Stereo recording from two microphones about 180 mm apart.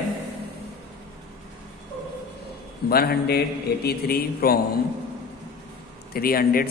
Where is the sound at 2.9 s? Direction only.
60° left (ahead or behind).